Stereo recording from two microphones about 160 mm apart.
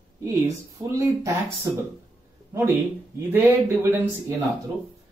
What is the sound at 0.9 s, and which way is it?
Speech, 20° right (ahead or behind).